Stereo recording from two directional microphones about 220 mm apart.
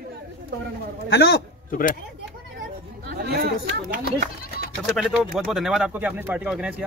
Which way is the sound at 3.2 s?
45° right (ahead or behind).